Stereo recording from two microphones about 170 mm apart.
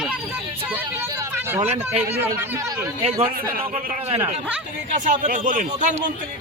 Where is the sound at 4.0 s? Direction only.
40° right (ahead or behind).